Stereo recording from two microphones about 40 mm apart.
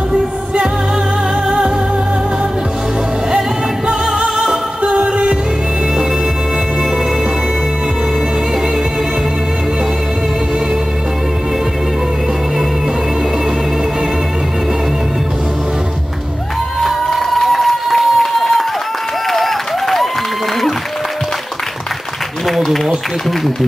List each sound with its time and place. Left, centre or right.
3.3 s music: centre
16.8 s run: centre
19.3 s a sound: centre
22.5 s run: centre